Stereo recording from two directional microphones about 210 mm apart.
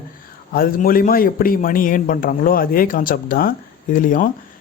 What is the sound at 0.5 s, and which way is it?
Speech, 45° left (ahead or behind).